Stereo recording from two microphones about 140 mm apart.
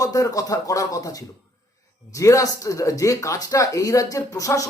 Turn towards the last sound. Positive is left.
turn(degrees=25)  # may be behind; listen again after turning